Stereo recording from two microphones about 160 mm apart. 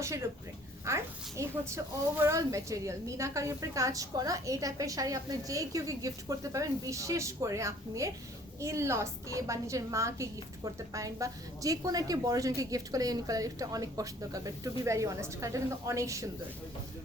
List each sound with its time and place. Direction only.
0.9 s a woman's voice: 15° right (ahead or behind)